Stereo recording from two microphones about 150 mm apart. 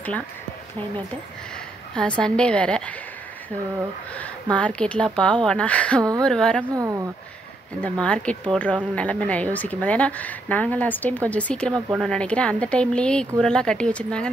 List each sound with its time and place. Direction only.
2.0 s a woman's voice: 5° left (ahead or behind)
4.2 s a woman's voice: 10° left (ahead or behind)
6.7 s speech: 25° right (ahead or behind)
8.0 s a woman's voice: 5° left (ahead or behind)